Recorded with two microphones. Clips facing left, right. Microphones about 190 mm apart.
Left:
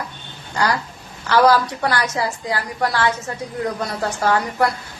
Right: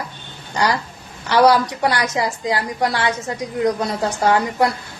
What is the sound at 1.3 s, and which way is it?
A woman's voice, 20° right (ahead or behind).